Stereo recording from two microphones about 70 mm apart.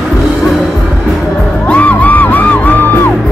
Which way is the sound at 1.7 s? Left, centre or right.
Left.